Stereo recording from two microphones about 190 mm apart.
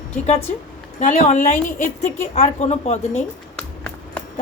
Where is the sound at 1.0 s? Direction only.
35° left (ahead or behind).